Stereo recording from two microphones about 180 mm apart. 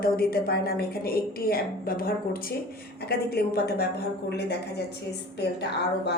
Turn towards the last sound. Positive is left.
turn(degrees=65)  # may be behind; listen again after turning